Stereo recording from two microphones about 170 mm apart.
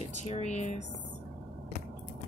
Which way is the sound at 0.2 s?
40° left (ahead or behind).